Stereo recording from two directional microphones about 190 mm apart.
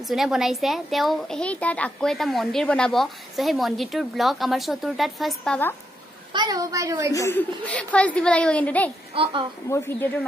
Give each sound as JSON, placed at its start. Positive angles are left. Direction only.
{"t": 0.1, "sound": "a child's voice", "side_deg": 0}
{"t": 6.3, "sound": "a woman's voice", "side_deg": -20}
{"t": 7.2, "sound": "a child's voice", "side_deg": 10}
{"t": 9.1, "sound": "a woman's voice", "side_deg": -30}
{"t": 9.7, "sound": "a child's voice", "side_deg": 15}